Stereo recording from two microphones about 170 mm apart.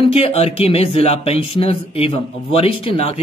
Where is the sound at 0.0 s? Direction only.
35° left (ahead or behind).